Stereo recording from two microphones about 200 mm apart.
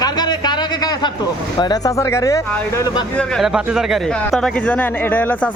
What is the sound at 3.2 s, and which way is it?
Speech, centre (ahead or behind).